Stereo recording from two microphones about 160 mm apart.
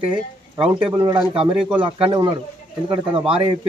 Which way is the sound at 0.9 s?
25° right (ahead or behind).